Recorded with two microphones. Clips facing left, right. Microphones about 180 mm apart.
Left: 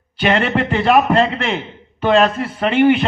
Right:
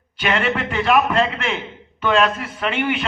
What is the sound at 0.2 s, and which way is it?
A man's voice, 35° left (ahead or behind).